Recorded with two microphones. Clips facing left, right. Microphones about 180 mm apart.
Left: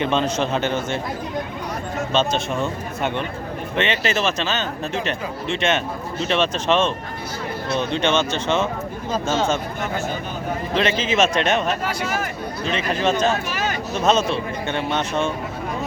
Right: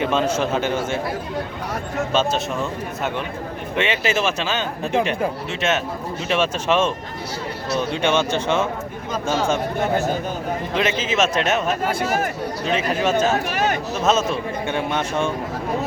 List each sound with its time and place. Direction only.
0.0 s a man's voice: 10° right (ahead or behind)
2.1 s a man's voice: 5° right (ahead or behind)
10.8 s a man's voice: 5° right (ahead or behind)
11.9 s speech: 45° right (ahead or behind)
12.6 s a man's voice: 5° right (ahead or behind)
13.5 s speech: 60° right (ahead or behind)
13.9 s a man's voice: 5° right (ahead or behind)